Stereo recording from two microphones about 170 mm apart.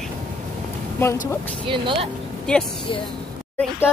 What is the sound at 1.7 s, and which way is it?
Speech, 30° right (ahead or behind).